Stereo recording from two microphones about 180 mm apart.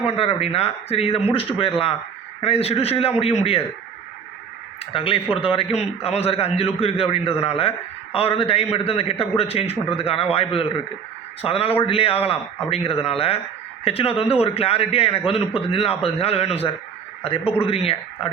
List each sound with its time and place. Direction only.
0.2 s a man's voice: 35° left (ahead or behind)
4.9 s a man's voice: 30° left (ahead or behind)